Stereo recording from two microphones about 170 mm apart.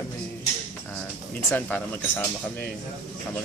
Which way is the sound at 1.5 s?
10° left (ahead or behind).